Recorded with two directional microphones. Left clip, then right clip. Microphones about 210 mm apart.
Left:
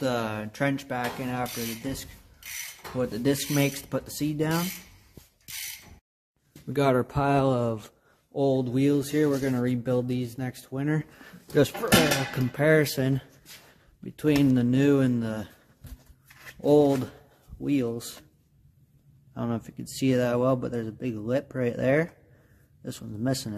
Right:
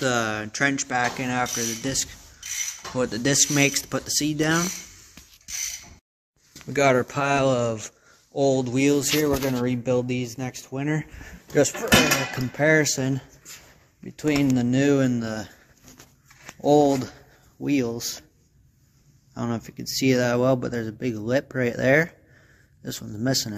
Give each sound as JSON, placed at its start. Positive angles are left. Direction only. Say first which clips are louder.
{"t": 0.0, "sound": "speech", "louder": "right 5 dB", "side_deg": 5}
{"t": 6.7, "sound": "speech", "louder": "right 4 dB", "side_deg": 10}
{"t": 14.6, "sound": "speech", "louder": "right 2 dB", "side_deg": 10}
{"t": 16.6, "sound": "speech", "louder": "right 2 dB", "side_deg": 10}
{"t": 19.3, "sound": "speech", "louder": "right 2 dB", "side_deg": 5}